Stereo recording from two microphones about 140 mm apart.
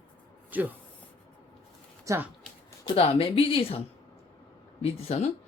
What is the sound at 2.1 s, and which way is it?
Speech, 20° right (ahead or behind).